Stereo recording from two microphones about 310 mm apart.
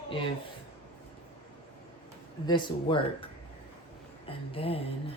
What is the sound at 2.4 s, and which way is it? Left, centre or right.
Speech, centre.